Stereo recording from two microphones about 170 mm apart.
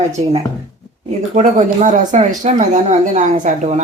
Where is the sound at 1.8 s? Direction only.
45° right (ahead or behind).